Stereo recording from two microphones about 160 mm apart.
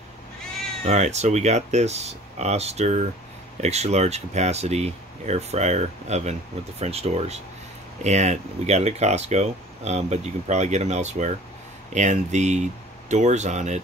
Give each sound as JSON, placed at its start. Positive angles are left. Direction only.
{"t": 0.8, "sound": "speech", "side_deg": -45}